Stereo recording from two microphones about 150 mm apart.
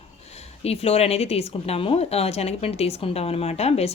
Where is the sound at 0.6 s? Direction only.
45° left (ahead or behind).